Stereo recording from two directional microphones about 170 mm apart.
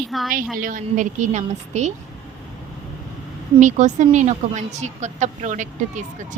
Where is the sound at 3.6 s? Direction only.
45° right (ahead or behind).